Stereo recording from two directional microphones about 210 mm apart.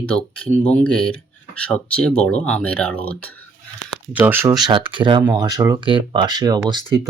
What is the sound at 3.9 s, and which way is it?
Speech, 5° right (ahead or behind).